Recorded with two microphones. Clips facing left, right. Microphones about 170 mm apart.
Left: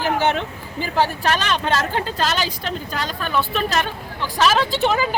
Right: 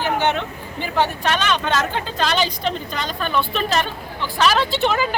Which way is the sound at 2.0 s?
5° left (ahead or behind).